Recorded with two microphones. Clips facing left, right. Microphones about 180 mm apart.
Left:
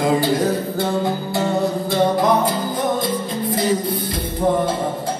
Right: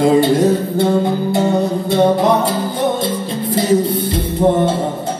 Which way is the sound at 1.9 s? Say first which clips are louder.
Right 4 dB; 25° right (ahead or behind).